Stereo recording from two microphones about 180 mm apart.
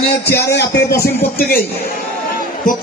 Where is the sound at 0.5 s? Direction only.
65° left (ahead or behind).